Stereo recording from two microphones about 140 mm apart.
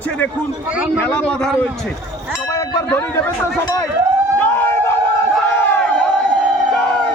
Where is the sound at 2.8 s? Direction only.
10° left (ahead or behind).